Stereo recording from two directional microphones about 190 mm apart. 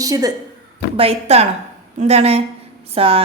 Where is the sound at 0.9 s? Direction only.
30° right (ahead or behind).